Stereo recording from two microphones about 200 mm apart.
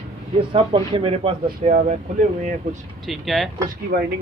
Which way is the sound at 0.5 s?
25° right (ahead or behind).